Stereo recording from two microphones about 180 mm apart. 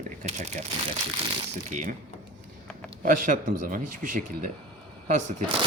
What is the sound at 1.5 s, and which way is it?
Speech, 45° right (ahead or behind).